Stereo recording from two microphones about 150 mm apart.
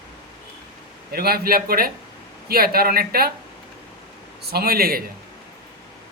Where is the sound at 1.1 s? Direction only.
85° right.